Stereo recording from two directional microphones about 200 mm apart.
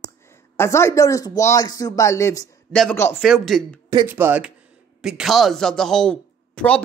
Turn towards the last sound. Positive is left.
turn(degrees=5)  # may be behind; listen again after turning